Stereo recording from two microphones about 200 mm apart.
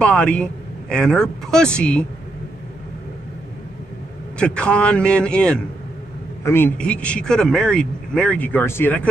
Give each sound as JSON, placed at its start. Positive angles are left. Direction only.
{"t": 0.0, "sound": "a man's voice", "side_deg": 5}
{"t": 4.4, "sound": "a man's voice", "side_deg": 5}